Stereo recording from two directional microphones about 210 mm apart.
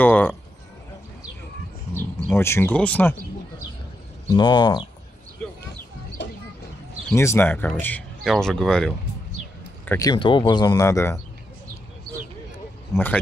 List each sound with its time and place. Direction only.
0.0 s speech: 10° left (ahead or behind)
2.0 s speech: 10° left (ahead or behind)
4.3 s speech: 20° left (ahead or behind)
6.2 s a sound: 55° left (ahead or behind)
7.1 s speech: 10° left (ahead or behind)
9.8 s speech: 15° left (ahead or behind)
12.9 s speech: 10° left (ahead or behind)